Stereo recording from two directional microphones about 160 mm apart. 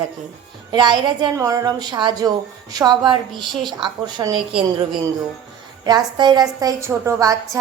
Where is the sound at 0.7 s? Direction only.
30° right (ahead or behind).